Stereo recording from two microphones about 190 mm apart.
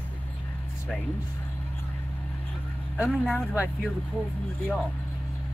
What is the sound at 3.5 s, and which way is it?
Speech, 10° right (ahead or behind).